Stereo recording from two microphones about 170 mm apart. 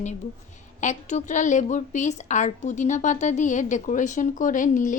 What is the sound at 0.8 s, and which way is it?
A woman's voice, 45° left (ahead or behind).